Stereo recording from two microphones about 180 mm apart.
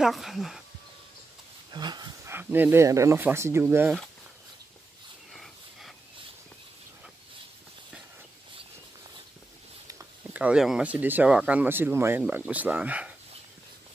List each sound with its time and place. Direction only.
0.0 s speech: centre (ahead or behind)
1.7 s dog: 25° right (ahead or behind)
2.3 s speech: 10° right (ahead or behind)
5.3 s a sound: centre (ahead or behind)
9.8 s speech: 15° right (ahead or behind)